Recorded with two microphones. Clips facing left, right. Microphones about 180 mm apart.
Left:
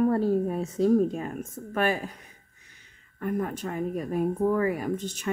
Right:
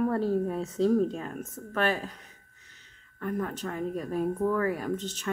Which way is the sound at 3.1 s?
15° left (ahead or behind).